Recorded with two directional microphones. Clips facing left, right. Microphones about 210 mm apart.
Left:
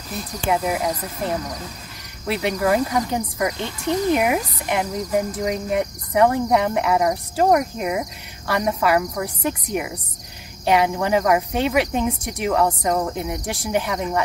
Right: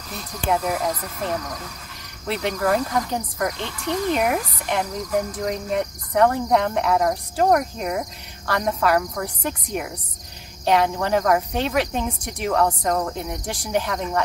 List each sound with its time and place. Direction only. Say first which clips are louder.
0.5 s speech: left 1 dB; 5° left (ahead or behind)
1.4 s speech: left 2 dB; 20° left (ahead or behind)
2.2 s speech: left 2 dB; 10° left (ahead or behind)
3.5 s speech: left 3 dB; 15° left (ahead or behind)